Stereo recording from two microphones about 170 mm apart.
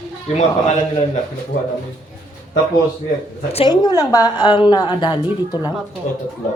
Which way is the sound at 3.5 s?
35° left (ahead or behind).